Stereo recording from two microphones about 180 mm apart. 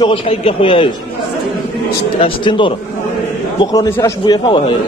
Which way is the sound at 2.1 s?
30° left (ahead or behind).